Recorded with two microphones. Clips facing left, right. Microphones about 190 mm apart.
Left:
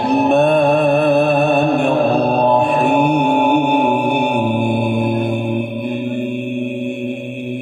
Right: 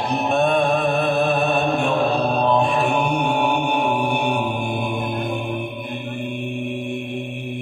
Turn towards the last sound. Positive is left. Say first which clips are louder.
# left 6 dB
turn(degrees=60)  # may be behind; listen again after turning